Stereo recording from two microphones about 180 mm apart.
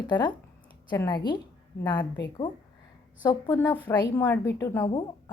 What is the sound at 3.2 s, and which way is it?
A woman's voice, 20° left (ahead or behind).